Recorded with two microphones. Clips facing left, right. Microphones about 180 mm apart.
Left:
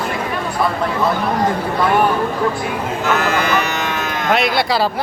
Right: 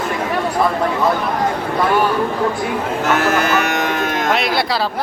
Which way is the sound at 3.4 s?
50° right (ahead or behind).